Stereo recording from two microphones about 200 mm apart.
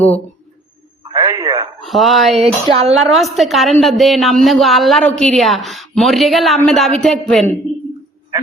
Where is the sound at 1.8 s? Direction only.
Centre (ahead or behind).